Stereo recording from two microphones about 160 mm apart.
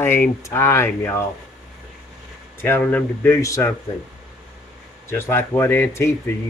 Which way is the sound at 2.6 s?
10° left (ahead or behind).